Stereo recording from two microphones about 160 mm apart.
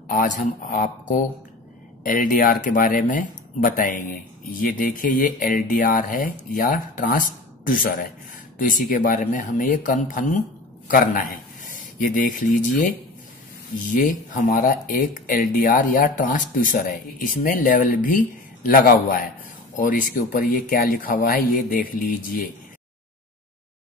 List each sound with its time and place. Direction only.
0.7 s a man's voice: 55° left (ahead or behind)
13.8 s speech: 55° left (ahead or behind)